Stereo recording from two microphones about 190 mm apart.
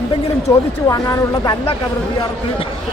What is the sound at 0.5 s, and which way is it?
Speech, 15° left (ahead or behind).